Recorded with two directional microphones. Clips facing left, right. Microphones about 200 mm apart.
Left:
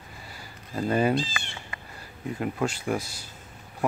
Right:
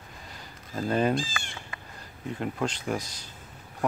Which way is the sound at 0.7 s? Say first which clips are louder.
Left 2 dB; 10° left (ahead or behind).